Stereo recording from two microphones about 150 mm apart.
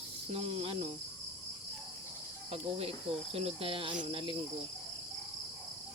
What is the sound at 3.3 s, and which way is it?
Speech, 40° right (ahead or behind).